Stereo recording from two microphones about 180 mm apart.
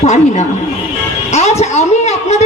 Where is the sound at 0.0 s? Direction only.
40° left (ahead or behind).